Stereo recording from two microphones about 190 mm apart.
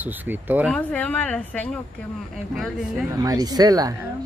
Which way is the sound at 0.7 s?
10° left (ahead or behind).